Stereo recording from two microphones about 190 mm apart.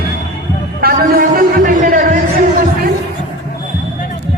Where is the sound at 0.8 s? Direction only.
50° right (ahead or behind).